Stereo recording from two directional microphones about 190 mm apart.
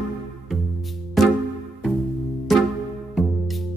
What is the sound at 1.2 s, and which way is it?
Music, centre (ahead or behind).